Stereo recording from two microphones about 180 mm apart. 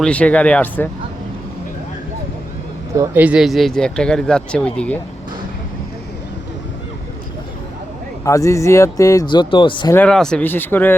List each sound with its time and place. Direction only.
0.0 s speech: 5° left (ahead or behind)
2.9 s speech: 15° right (ahead or behind); by 4.9 s 5° left (ahead or behind)
8.2 s speech: 15° left (ahead or behind)
9.9 s speech: 5° left (ahead or behind)